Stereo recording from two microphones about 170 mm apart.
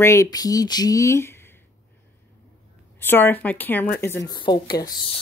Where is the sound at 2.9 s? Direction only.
10° left (ahead or behind).